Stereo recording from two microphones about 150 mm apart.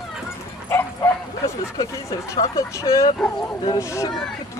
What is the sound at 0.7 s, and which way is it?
Speech, 20° left (ahead or behind).